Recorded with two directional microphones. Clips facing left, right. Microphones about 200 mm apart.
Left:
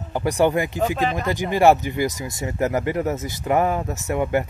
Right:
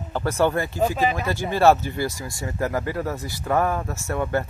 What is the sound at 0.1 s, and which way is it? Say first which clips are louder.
Speech: left 2 dB; 15° left (ahead or behind).